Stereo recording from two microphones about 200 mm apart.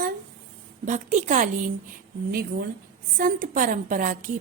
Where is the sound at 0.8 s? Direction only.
40° right (ahead or behind).